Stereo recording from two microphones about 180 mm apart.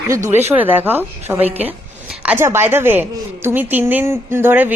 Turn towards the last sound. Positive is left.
turn(degrees=-10)  # may be behind; listen again after turning